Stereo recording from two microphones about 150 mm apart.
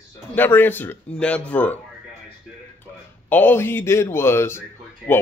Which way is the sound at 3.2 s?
15° left (ahead or behind).